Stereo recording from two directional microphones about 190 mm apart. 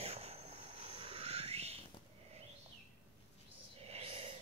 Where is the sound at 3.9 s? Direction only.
30° right (ahead or behind).